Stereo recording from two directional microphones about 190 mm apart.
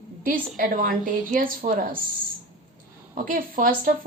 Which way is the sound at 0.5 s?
45° right (ahead or behind).